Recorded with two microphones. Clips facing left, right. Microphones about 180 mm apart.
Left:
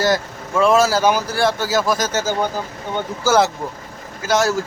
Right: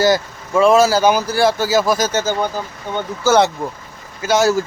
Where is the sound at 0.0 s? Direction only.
Centre (ahead or behind).